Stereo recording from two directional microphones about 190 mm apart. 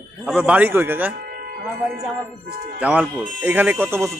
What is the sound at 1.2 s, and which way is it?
Music, 50° right (ahead or behind).